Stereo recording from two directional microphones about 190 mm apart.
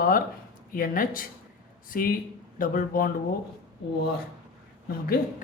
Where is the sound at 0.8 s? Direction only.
45° left (ahead or behind).